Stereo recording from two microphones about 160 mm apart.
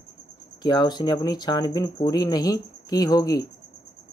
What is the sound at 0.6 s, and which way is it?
Speech, 25° left (ahead or behind).